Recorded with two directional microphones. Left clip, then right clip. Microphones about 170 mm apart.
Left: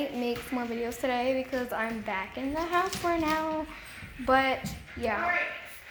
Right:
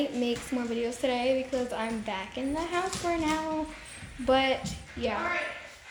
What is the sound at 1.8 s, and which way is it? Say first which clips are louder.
Speech: left 1 dB; 15° right (ahead or behind).